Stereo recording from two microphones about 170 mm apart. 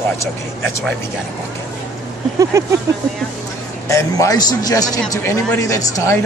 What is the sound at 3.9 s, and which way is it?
A man's voice, 20° left (ahead or behind).